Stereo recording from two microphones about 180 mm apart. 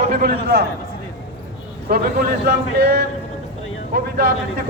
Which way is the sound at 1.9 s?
55° right (ahead or behind).